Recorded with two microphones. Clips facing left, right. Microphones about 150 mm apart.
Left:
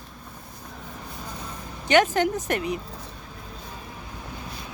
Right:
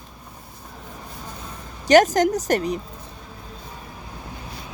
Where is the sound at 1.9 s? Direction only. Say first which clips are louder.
Right 5 dB; 40° right (ahead or behind).